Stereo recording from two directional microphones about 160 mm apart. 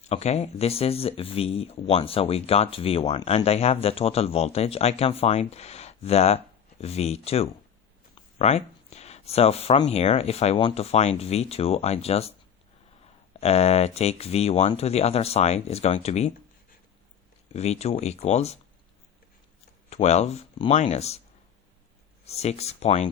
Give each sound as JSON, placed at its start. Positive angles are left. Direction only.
{"t": 0.0, "sound": "speech", "side_deg": 45}
{"t": 13.4, "sound": "speech", "side_deg": 40}
{"t": 17.5, "sound": "speech", "side_deg": 40}
{"t": 19.9, "sound": "speech", "side_deg": 45}
{"t": 22.3, "sound": "speech", "side_deg": 40}